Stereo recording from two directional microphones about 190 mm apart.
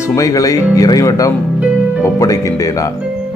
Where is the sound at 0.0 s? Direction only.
15° left (ahead or behind).